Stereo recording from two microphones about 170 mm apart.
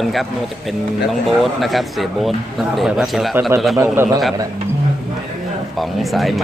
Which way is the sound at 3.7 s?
15° right (ahead or behind).